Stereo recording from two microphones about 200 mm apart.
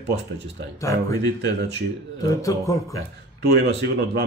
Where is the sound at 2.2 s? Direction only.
15° left (ahead or behind).